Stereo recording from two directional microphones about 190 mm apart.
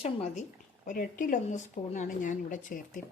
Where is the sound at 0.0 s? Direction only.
35° left (ahead or behind).